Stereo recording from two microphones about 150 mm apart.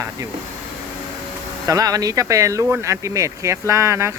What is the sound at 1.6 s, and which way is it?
Speech, 25° right (ahead or behind).